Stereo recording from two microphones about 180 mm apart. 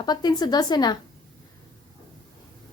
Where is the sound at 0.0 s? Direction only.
20° left (ahead or behind).